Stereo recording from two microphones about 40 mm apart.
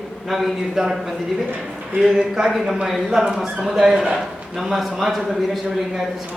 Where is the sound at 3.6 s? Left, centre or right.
Centre.